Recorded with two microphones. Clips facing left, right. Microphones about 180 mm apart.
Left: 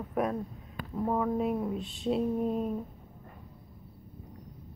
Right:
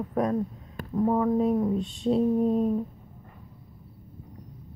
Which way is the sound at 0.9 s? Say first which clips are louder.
Right 6 dB; 15° right (ahead or behind).